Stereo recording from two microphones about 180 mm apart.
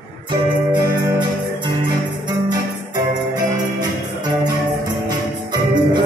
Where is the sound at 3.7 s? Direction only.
20° right (ahead or behind).